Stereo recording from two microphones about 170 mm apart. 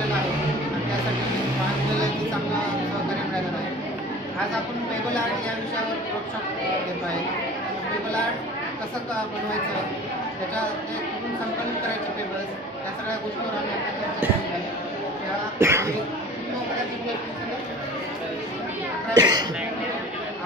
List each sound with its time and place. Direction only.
15.6 s speech: 15° right (ahead or behind)
19.1 s speech: 25° right (ahead or behind)